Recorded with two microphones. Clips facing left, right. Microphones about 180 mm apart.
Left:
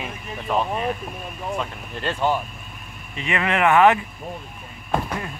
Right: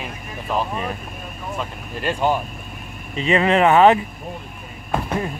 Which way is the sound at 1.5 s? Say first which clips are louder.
Right 1 dB; 5° right (ahead or behind).